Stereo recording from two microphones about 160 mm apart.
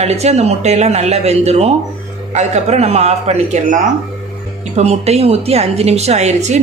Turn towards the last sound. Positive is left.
turn(degrees=-45)  # may be behind; listen again after turning